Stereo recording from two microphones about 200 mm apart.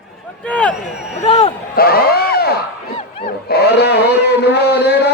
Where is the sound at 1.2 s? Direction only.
30° left (ahead or behind).